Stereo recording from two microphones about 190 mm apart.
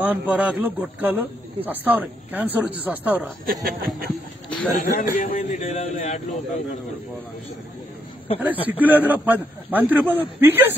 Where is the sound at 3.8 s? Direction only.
50° right (ahead or behind).